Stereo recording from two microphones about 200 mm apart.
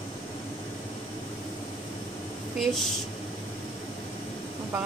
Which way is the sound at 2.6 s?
Centre (ahead or behind).